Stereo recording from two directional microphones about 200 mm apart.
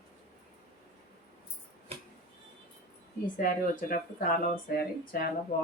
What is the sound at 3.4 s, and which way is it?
Speech, 40° left (ahead or behind).